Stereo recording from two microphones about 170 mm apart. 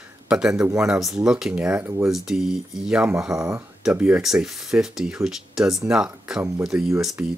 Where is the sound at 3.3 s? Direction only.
15° right (ahead or behind).